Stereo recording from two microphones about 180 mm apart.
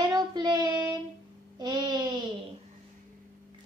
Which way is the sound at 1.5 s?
25° right (ahead or behind).